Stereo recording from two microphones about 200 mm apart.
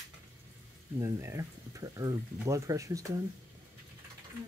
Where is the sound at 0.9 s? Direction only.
15° right (ahead or behind).